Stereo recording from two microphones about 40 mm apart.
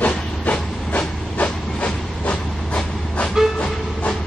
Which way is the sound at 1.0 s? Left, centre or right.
Left.